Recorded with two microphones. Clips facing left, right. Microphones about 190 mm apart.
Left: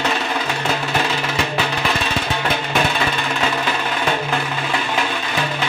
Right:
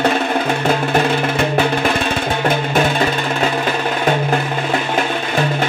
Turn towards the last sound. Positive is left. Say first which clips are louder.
# right 5 dB
turn(degrees=-45)  # may be behind; listen again after turning